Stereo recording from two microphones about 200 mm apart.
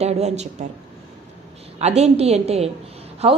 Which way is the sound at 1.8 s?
30° right (ahead or behind).